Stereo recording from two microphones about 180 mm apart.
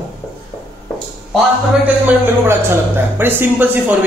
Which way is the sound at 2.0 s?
15° right (ahead or behind).